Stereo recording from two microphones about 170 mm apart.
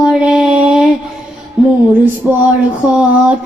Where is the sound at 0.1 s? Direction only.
5° right (ahead or behind).